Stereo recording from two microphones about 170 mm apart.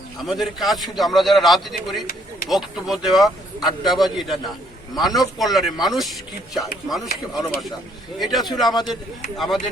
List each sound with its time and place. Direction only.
0.2 s a man's voice: centre (ahead or behind)
8.7 s speech: 25° left (ahead or behind)